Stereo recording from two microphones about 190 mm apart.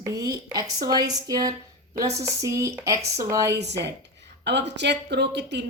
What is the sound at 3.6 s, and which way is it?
Speech, 65° right (ahead or behind).